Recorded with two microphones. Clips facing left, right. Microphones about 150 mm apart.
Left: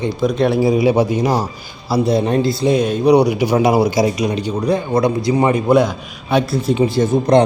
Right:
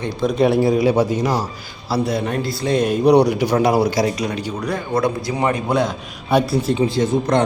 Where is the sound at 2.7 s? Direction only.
5° right (ahead or behind); by 5.1 s 20° left (ahead or behind).